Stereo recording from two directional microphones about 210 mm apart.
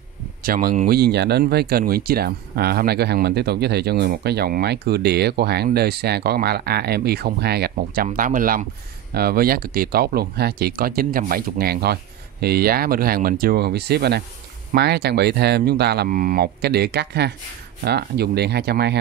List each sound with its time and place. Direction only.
0.4 s speech: 45° right (ahead or behind)